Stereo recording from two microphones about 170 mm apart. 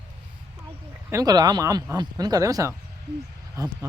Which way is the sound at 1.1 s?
25° right (ahead or behind).